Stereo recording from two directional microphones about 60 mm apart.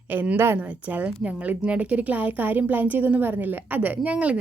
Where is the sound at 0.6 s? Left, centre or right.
Right.